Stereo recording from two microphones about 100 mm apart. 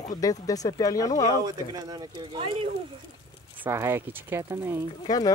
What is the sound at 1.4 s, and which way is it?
Speech, 40° right (ahead or behind).